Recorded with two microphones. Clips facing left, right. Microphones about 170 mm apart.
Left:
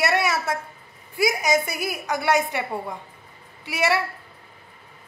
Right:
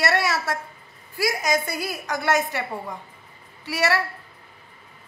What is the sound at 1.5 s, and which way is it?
A woman's voice, 10° left (ahead or behind).